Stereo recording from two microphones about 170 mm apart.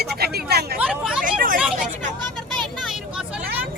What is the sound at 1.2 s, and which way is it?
Hubbub, 55° right (ahead or behind).